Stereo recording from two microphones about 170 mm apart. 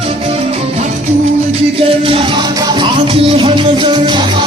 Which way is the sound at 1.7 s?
35° right (ahead or behind).